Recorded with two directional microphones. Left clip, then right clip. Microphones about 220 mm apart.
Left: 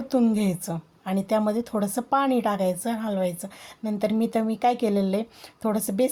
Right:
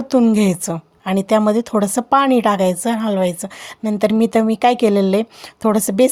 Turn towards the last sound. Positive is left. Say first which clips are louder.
# right 10 dB
turn(degrees=-30)  # may be behind; listen again after turning